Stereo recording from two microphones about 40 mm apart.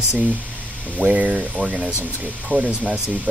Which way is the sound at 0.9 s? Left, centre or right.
Right.